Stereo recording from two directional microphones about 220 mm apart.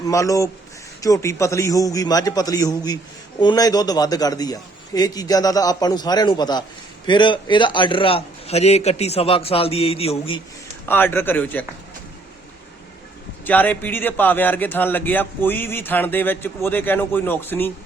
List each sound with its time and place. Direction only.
0.0 s a man's voice: 15° left (ahead or behind)
10.8 s a man's voice: 10° left (ahead or behind)
13.4 s a man's voice: 10° left (ahead or behind)